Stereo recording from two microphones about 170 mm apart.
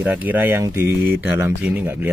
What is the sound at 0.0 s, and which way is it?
Speech, 10° right (ahead or behind).